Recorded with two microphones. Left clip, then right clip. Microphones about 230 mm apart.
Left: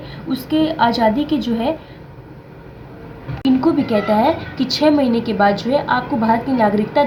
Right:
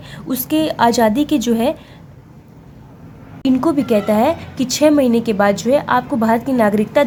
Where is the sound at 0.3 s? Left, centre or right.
Right.